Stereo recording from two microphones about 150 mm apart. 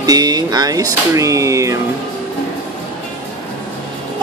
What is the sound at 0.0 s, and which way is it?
Speech, 25° right (ahead or behind).